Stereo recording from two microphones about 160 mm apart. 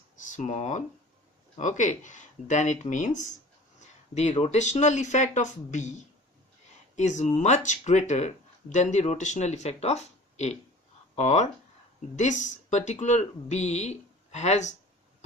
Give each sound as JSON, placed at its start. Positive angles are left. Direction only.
{"t": 0.3, "sound": "speech", "side_deg": 45}